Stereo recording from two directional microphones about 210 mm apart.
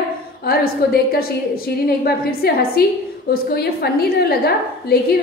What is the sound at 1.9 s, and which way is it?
A woman's voice, 45° left (ahead or behind).